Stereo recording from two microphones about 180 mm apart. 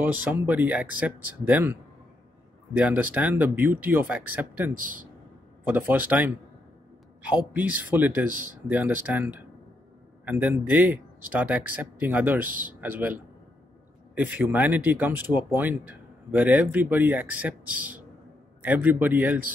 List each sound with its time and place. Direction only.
0.1 s speech: 10° right (ahead or behind)
4.7 s speech: 50° right (ahead or behind)
5.7 s speech: 10° right (ahead or behind)
7.5 s speech: 10° right (ahead or behind)
12.4 s speech: 50° right (ahead or behind)
12.8 s speech: 10° right (ahead or behind)
14.1 s speech: 10° right (ahead or behind)